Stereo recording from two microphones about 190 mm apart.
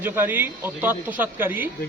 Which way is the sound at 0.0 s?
10° right (ahead or behind).